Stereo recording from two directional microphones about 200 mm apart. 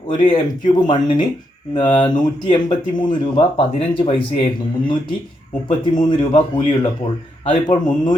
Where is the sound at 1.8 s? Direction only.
25° left (ahead or behind).